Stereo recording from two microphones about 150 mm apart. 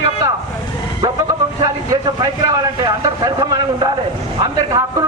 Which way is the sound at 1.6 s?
30° right (ahead or behind).